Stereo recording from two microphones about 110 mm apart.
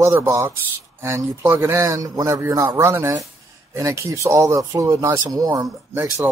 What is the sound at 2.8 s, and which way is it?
Speech, 20° right (ahead or behind).